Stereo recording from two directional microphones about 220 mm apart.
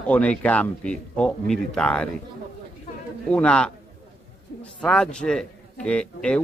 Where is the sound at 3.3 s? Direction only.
5° left (ahead or behind).